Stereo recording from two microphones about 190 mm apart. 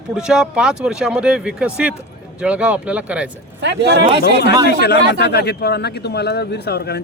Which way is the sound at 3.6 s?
65° right (ahead or behind).